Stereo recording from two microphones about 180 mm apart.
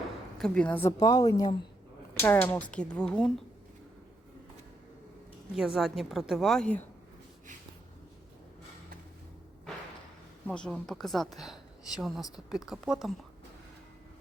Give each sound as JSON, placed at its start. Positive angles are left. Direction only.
{"t": 0.3, "sound": "a woman's voice", "side_deg": 5}
{"t": 5.5, "sound": "a woman's voice", "side_deg": 0}
{"t": 10.4, "sound": "a woman's voice", "side_deg": 5}